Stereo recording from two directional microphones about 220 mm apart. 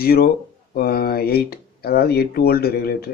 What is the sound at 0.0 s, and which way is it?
Speech, 45° left (ahead or behind).